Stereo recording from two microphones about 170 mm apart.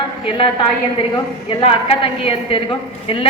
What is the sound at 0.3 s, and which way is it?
A woman's voice, 30° left (ahead or behind).